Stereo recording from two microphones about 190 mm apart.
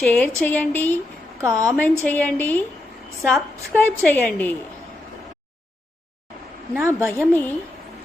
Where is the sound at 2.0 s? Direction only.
10° left (ahead or behind).